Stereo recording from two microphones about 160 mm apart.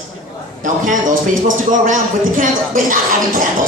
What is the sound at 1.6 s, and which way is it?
A man's voice, 55° right (ahead or behind).